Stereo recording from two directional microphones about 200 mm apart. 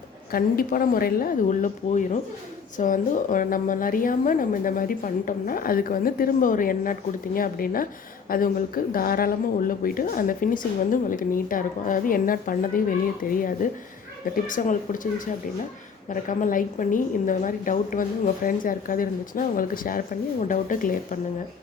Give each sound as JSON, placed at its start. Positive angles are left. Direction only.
{"t": 0.3, "sound": "a woman's voice", "side_deg": 45}
{"t": 16.0, "sound": "a woman's voice", "side_deg": 40}